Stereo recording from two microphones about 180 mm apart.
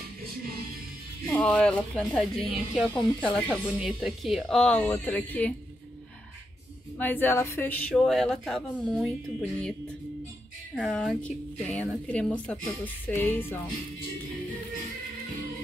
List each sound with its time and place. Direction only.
1.3 s speech: 5° left (ahead or behind)
7.0 s speech: 10° left (ahead or behind)
10.8 s a woman's voice: centre (ahead or behind)